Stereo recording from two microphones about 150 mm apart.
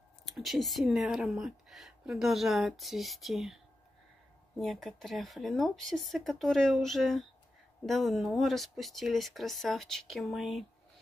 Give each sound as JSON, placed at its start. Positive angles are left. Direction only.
{"t": 0.2, "sound": "speech", "side_deg": 0}
{"t": 4.6, "sound": "speech", "side_deg": 0}